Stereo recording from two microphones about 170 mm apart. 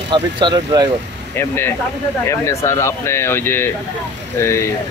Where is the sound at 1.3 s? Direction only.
15° left (ahead or behind).